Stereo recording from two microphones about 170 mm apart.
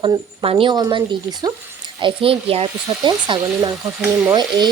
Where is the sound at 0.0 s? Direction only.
30° right (ahead or behind).